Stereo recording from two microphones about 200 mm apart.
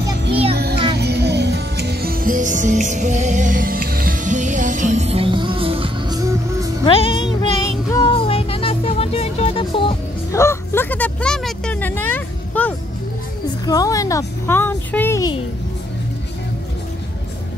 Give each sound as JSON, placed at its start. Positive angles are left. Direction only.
{"t": 0.3, "sound": "music", "side_deg": -30}
{"t": 0.9, "sound": "music", "side_deg": -55}
{"t": 6.8, "sound": "music", "side_deg": 25}
{"t": 8.1, "sound": "music", "side_deg": 30}
{"t": 10.3, "sound": "a sound", "side_deg": 15}